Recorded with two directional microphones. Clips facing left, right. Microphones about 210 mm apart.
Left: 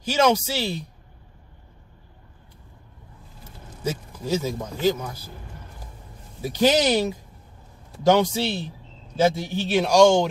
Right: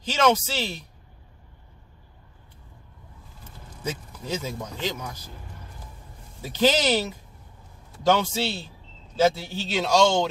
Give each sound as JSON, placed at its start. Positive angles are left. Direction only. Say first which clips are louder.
{"t": 0.0, "sound": "a man's voice", "louder": "left 2 dB", "side_deg": 10}
{"t": 3.8, "sound": "a man's voice", "louder": "left 4 dB", "side_deg": 10}
{"t": 6.4, "sound": "a man's voice", "louder": "left 3 dB", "side_deg": 15}